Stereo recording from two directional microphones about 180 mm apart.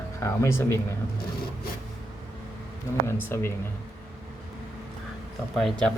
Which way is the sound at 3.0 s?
15° left (ahead or behind).